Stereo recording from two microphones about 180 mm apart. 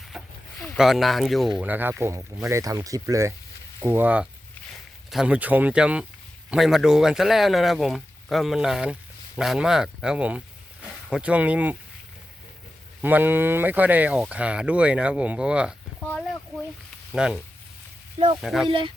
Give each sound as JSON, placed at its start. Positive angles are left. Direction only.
{"t": 0.1, "sound": "a sound", "side_deg": 0}
{"t": 0.6, "sound": "speech", "side_deg": 0}
{"t": 13.0, "sound": "speech", "side_deg": -10}
{"t": 16.0, "sound": "a sound", "side_deg": 5}
{"t": 17.1, "sound": "speech", "side_deg": -5}
{"t": 18.7, "sound": "speech", "side_deg": -30}